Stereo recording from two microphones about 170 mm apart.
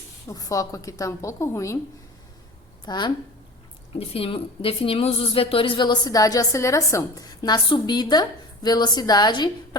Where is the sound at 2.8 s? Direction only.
25° left (ahead or behind).